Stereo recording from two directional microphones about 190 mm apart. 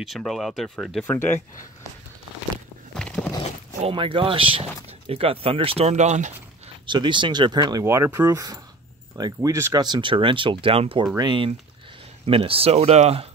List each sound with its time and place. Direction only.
0.0 s speech: centre (ahead or behind)
1.0 s speech: 10° left (ahead or behind)
2.9 s a sound: 5° left (ahead or behind)
3.8 s speech: 25° right (ahead or behind)
6.9 s speech: 25° right (ahead or behind)